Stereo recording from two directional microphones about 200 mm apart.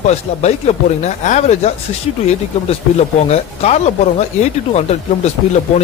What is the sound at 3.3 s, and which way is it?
Speech, 35° left (ahead or behind).